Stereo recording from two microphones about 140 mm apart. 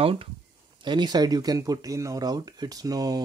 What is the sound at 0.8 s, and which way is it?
Speech, 30° right (ahead or behind).